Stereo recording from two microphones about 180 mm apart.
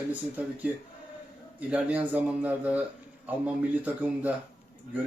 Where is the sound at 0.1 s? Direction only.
10° right (ahead or behind).